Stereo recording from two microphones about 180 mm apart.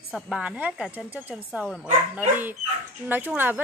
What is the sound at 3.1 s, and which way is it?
Speech, 10° right (ahead or behind).